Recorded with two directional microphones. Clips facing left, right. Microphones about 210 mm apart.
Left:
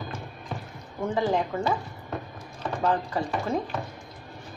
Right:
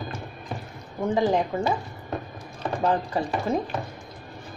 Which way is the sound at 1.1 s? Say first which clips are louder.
Right 3 dB; 15° right (ahead or behind).